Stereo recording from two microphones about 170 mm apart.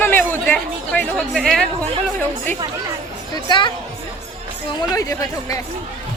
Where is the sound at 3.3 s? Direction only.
25° left (ahead or behind).